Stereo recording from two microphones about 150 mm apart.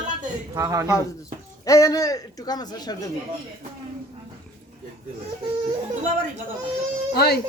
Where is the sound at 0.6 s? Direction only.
20° right (ahead or behind).